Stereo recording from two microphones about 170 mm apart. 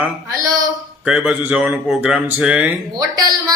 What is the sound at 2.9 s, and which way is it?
Speech, 25° right (ahead or behind).